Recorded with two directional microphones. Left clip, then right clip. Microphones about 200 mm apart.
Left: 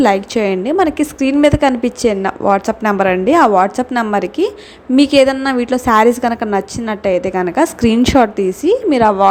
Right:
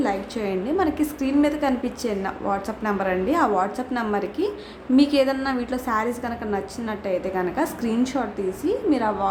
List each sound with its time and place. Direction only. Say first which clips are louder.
0.0 s a woman's voice: left 12 dB; 40° left (ahead or behind)